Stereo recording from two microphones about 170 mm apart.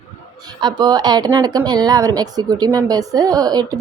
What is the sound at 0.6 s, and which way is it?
Speech, 25° right (ahead or behind).